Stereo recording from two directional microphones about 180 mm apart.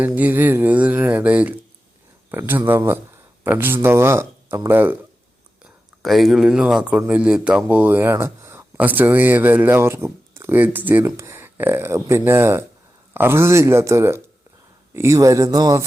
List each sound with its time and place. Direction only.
0.0 s speech: 10° right (ahead or behind)
6.0 s speech: centre (ahead or behind); by 15.8 s 20° right (ahead or behind)